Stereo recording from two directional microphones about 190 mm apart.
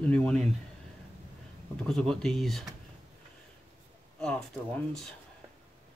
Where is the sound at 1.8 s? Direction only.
Centre (ahead or behind).